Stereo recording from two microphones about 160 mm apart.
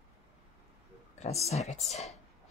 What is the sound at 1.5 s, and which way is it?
Speech, 45° left (ahead or behind).